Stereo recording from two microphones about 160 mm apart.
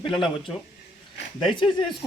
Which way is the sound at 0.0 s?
30° left (ahead or behind).